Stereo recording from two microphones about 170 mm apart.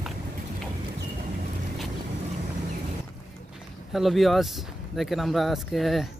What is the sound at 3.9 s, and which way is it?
Speech, centre (ahead or behind).